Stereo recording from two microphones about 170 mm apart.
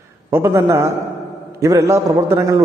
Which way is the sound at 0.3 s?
15° right (ahead or behind).